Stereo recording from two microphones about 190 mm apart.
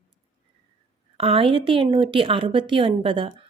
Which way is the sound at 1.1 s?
30° right (ahead or behind).